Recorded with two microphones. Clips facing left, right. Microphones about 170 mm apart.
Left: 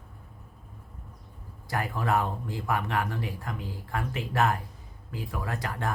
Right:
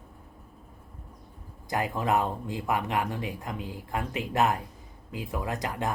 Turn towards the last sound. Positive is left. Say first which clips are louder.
# right 2 dB
turn(degrees=-20)  # may be behind; listen again after turning